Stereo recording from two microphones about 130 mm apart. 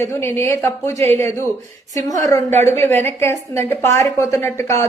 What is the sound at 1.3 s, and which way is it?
Speech, 20° left (ahead or behind).